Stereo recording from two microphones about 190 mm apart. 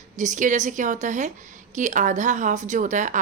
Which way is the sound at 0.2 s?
40° right (ahead or behind).